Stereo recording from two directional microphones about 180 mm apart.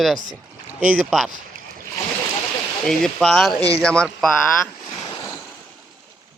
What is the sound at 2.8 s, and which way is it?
Speech, centre (ahead or behind).